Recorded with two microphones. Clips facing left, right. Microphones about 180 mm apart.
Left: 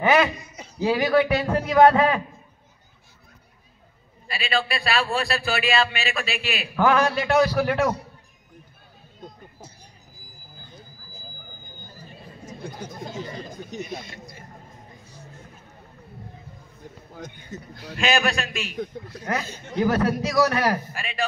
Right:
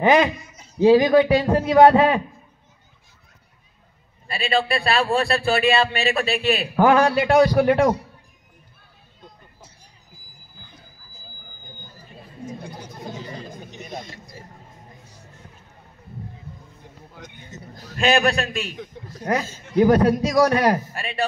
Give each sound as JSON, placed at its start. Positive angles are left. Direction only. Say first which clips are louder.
{"t": 0.7, "sound": "a man's voice", "louder": "right 6 dB", "side_deg": -25}
{"t": 4.5, "sound": "a man's voice", "louder": "right 4 dB", "side_deg": -30}
{"t": 9.2, "sound": "vehicle", "louder": "left 5 dB", "side_deg": 45}
{"t": 13.9, "sound": "a sound", "louder": "right 2 dB", "side_deg": -35}
{"t": 17.1, "sound": "a sound", "louder": "left 5 dB", "side_deg": 45}
{"t": 17.7, "sound": "a man's voice", "louder": "right 4 dB", "side_deg": -40}